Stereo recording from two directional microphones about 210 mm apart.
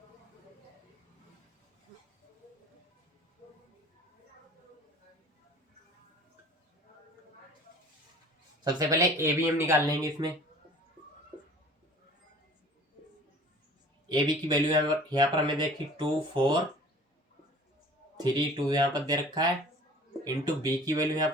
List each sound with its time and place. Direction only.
8.6 s speech: 15° right (ahead or behind)
14.1 s speech: 20° right (ahead or behind)
18.2 s speech: 20° right (ahead or behind)